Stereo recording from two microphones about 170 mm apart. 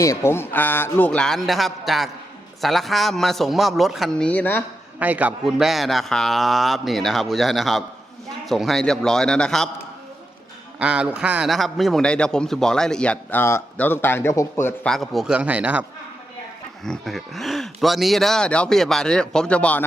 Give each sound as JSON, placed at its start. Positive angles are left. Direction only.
{"t": 0.0, "sound": "a man's voice", "side_deg": 15}
{"t": 4.9, "sound": "a man's voice", "side_deg": -10}
{"t": 10.8, "sound": "a man's voice", "side_deg": -5}
{"t": 14.9, "sound": "a man's voice", "side_deg": 0}